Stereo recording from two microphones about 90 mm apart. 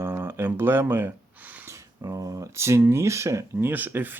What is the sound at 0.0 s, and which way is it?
Speech, 25° right (ahead or behind).